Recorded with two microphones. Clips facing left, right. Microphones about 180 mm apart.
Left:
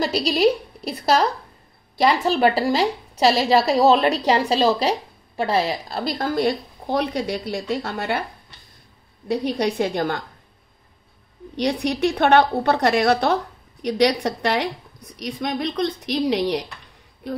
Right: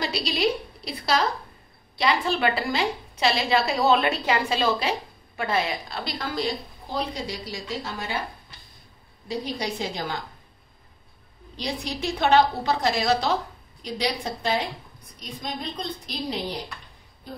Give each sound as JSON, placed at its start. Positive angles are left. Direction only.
{"t": 0.0, "sound": "a woman's voice", "side_deg": 40}
{"t": 6.1, "sound": "a woman's voice", "side_deg": 55}
{"t": 9.3, "sound": "a woman's voice", "side_deg": 60}
{"t": 11.5, "sound": "a woman's voice", "side_deg": 65}
{"t": 13.8, "sound": "speech", "side_deg": 70}